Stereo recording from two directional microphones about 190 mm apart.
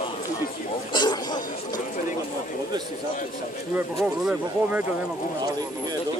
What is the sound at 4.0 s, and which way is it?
Speech, centre (ahead or behind).